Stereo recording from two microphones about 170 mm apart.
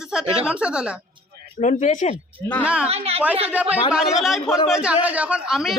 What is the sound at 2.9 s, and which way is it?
Speech, 35° right (ahead or behind).